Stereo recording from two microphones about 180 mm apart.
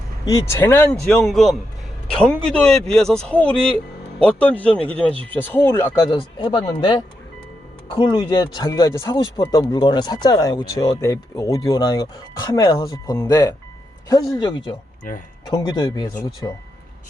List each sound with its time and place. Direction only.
0.3 s a man's voice: 15° left (ahead or behind)